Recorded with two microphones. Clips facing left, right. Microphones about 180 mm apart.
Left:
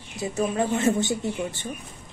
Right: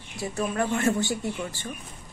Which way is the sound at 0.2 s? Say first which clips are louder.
Left 3 dB; 20° left (ahead or behind).